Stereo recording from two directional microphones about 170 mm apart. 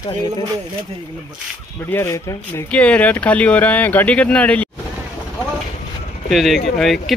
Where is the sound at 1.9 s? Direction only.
15° left (ahead or behind).